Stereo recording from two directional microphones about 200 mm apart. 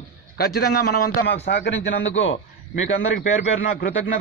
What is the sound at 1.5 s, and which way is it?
Speech, 65° left (ahead or behind).